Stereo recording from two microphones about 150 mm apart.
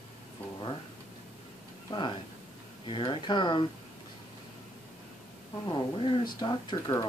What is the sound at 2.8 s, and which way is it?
Speech, 35° left (ahead or behind).